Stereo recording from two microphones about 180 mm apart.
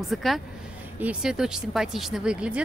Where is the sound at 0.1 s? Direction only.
Centre (ahead or behind).